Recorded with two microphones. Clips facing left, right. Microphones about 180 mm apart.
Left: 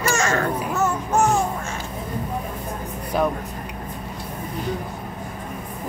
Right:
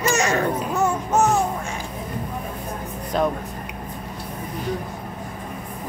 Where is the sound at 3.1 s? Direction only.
5° left (ahead or behind).